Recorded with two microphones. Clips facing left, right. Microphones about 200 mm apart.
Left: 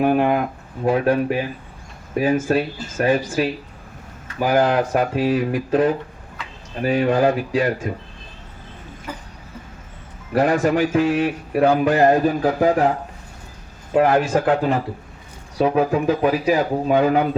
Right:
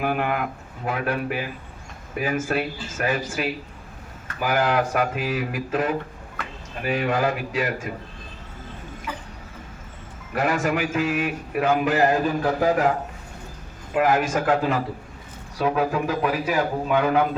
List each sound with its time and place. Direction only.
0.0 s a man's voice: 30° left (ahead or behind)
9.1 s a sound: 40° left (ahead or behind)
10.3 s a man's voice: 35° left (ahead or behind)
13.9 s a man's voice: 30° left (ahead or behind)